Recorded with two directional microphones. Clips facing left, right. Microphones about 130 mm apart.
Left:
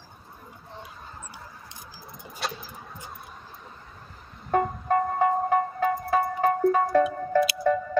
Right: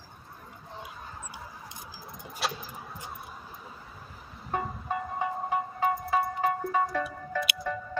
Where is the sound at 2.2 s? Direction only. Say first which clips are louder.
Even; centre (ahead or behind).